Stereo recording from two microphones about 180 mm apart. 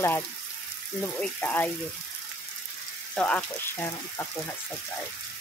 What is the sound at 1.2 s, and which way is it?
Speech, 10° left (ahead or behind).